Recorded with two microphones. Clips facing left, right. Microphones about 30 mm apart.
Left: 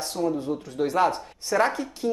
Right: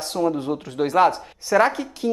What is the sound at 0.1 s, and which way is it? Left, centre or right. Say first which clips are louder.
Speech: right 5 dB; right.